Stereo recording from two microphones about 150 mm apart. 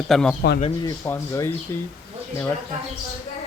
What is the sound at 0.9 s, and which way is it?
Speech, 20° left (ahead or behind).